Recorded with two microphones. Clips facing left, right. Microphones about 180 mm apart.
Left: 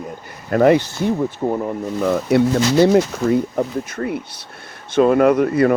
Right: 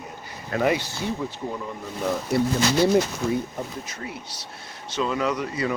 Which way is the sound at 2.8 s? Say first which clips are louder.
Left 6 dB; 70° left (ahead or behind).